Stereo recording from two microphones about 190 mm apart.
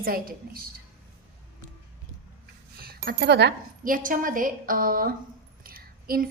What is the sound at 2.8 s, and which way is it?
A woman's voice, 55° right (ahead or behind).